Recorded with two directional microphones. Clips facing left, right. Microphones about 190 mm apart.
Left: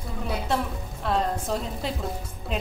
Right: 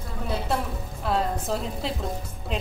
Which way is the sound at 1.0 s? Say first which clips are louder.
Even; centre (ahead or behind).